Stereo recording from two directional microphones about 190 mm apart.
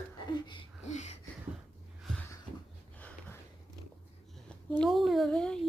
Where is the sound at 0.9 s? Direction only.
40° left (ahead or behind).